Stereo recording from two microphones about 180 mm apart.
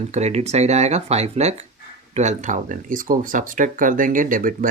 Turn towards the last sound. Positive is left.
turn(degrees=-50)  # may be behind; listen again after turning